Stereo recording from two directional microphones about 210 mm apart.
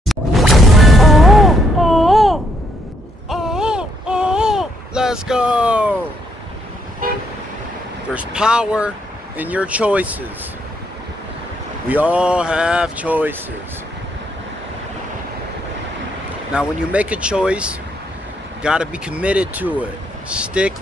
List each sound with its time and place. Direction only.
0.0 s music: centre (ahead or behind)
3.3 s a sound: centre (ahead or behind)
7.0 s vehicle: 40° right (ahead or behind)
8.1 s speech: 5° right (ahead or behind)
11.9 s speech: 5° right (ahead or behind)
16.5 s speech: 5° right (ahead or behind)